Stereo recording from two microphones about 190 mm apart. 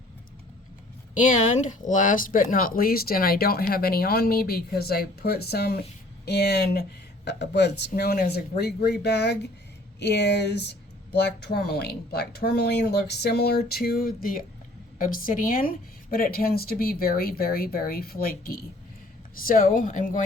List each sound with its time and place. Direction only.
1.2 s speech: 40° left (ahead or behind)